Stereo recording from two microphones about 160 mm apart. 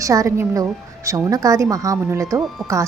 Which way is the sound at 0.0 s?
20° right (ahead or behind).